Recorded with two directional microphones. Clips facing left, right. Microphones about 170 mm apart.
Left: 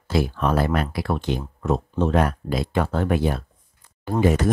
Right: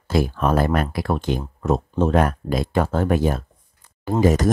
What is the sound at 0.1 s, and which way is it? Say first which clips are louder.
Speech: right 2 dB; 45° right (ahead or behind).